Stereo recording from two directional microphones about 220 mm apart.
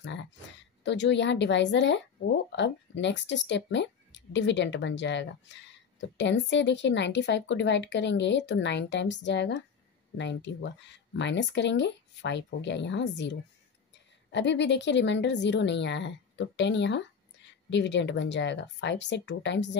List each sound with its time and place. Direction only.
0.0 s speech: 55° left (ahead or behind)